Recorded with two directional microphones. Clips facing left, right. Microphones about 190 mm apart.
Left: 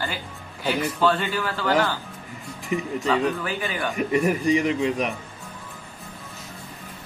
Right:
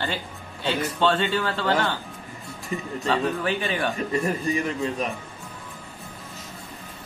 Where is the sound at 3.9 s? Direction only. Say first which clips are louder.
Left 3 dB; 15° left (ahead or behind).